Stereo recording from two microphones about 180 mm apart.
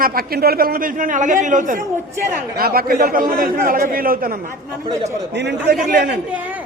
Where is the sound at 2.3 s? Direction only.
55° right (ahead or behind).